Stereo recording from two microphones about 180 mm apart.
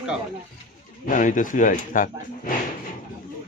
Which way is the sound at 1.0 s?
45° left (ahead or behind).